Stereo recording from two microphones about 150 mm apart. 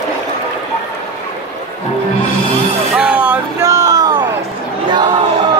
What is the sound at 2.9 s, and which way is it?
Vehicle, 10° right (ahead or behind).